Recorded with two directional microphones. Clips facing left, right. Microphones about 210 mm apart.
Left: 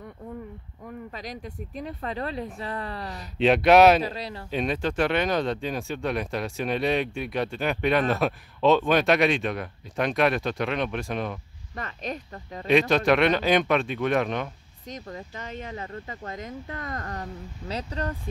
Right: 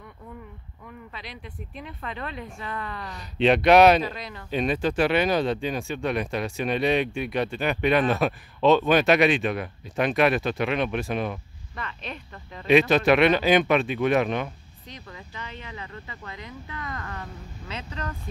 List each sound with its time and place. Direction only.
0.8 s speech: 40° left (ahead or behind)
3.2 s speech: centre (ahead or behind)
4.0 s speech: 30° left (ahead or behind)
4.5 s speech: centre (ahead or behind)
11.7 s speech: 40° left (ahead or behind)
12.6 s speech: 5° right (ahead or behind)
14.9 s speech: 45° left (ahead or behind)